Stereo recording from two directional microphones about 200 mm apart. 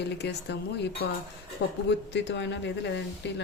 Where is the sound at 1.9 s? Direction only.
60° left (ahead or behind).